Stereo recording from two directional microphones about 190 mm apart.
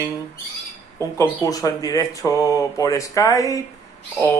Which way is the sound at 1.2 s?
15° left (ahead or behind).